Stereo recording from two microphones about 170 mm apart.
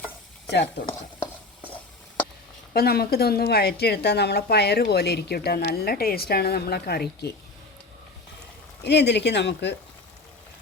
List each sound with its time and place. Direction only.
2.7 s a woman's voice: 65° left (ahead or behind)
8.8 s speech: 85° left